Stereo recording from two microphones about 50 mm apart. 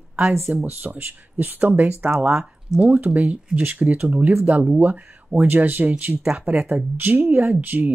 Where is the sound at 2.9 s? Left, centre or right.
Right.